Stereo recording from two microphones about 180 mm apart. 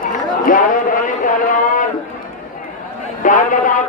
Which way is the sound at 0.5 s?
50° left (ahead or behind).